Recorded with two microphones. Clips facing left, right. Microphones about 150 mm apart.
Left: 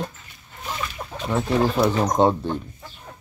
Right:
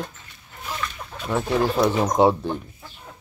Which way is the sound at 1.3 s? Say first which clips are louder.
Left 1 dB; centre (ahead or behind).